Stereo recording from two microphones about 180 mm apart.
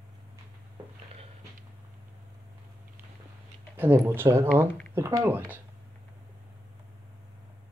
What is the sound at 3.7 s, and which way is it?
Speech, 10° right (ahead or behind).